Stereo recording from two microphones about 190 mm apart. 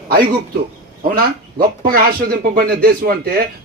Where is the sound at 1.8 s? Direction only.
55° right (ahead or behind).